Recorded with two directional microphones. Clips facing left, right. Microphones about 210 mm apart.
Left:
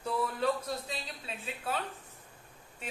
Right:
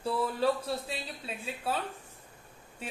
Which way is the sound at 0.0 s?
30° right (ahead or behind).